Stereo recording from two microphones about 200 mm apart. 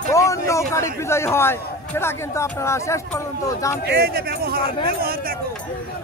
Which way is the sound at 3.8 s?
50° right (ahead or behind).